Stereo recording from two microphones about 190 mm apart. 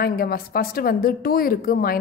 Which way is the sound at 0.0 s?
50° left (ahead or behind).